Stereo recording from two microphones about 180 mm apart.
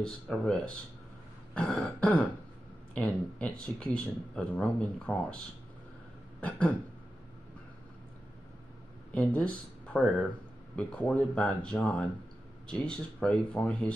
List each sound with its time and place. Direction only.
0.0 s a man's voice: 5° left (ahead or behind)
9.1 s a man's voice: 10° left (ahead or behind)